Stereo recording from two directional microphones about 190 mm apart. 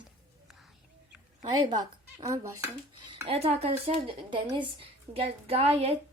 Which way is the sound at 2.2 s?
15° right (ahead or behind).